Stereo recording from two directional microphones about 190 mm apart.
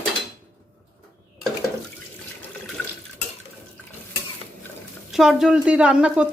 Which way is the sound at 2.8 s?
5° left (ahead or behind).